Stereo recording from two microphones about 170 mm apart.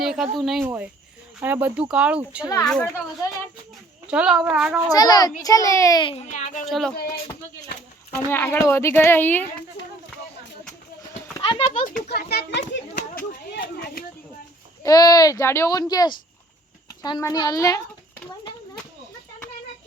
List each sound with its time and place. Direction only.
0.0 s speech: centre (ahead or behind)
0.6 s speech: 10° right (ahead or behind)
2.6 s speech: 5° left (ahead or behind)
4.0 s speech: 5° right (ahead or behind)
4.9 s a child's voice: 25° left (ahead or behind); by 6.7 s 45° left (ahead or behind)
6.7 s speech: centre (ahead or behind)
8.3 s speech: 15° left (ahead or behind)
11.3 s a sound: 20° left (ahead or behind)
11.6 s a child's voice: 45° left (ahead or behind)
12.0 s a child's voice: 70° left (ahead or behind)
12.9 s a sound: 45° left (ahead or behind)
13.5 s a sound: 60° left (ahead or behind)
14.8 s a child's voice: 20° left (ahead or behind)